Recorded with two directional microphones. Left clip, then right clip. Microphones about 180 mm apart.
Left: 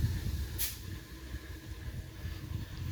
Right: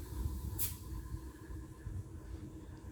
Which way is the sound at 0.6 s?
75° right (ahead or behind).